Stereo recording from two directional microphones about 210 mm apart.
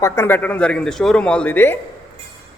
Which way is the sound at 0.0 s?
10° left (ahead or behind).